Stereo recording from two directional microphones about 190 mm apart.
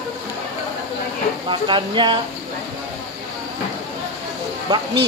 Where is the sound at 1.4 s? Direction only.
25° right (ahead or behind).